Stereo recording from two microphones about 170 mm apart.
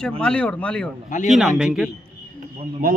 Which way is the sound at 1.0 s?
45° left (ahead or behind).